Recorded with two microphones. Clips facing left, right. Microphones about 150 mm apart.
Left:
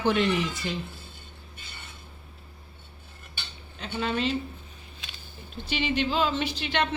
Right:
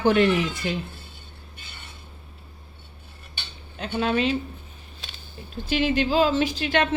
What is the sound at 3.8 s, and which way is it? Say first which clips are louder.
Speech: right 5 dB; 60° right (ahead or behind).